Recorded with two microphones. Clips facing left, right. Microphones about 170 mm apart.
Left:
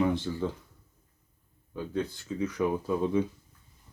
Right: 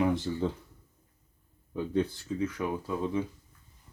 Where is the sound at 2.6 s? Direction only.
Centre (ahead or behind).